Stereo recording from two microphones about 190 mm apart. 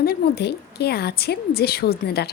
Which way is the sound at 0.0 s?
55° left (ahead or behind).